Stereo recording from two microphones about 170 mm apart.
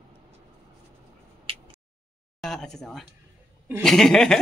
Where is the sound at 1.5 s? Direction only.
35° right (ahead or behind).